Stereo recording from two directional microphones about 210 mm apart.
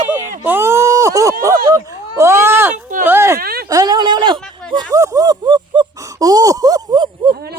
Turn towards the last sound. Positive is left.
turn(degrees=-50)  # may be behind; listen again after turning